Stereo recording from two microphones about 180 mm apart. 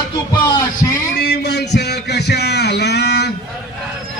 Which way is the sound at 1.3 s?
70° left (ahead or behind).